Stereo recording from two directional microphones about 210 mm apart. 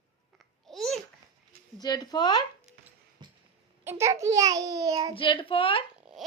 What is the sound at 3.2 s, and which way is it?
Cough, 20° right (ahead or behind).